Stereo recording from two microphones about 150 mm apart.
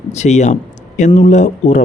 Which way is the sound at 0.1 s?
50° left (ahead or behind).